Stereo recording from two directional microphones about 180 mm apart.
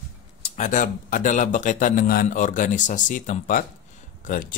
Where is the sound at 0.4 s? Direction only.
45° left (ahead or behind).